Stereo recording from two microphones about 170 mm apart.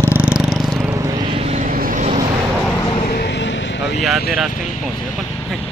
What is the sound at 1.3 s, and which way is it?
Vehicle, 40° right (ahead or behind).